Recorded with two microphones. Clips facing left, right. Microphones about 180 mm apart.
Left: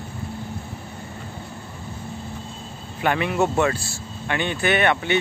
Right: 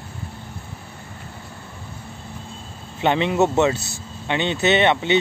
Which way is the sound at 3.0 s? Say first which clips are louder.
Right 3 dB; 25° right (ahead or behind).